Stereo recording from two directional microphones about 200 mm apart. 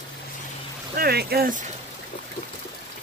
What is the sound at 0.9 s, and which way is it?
Speech, 50° right (ahead or behind).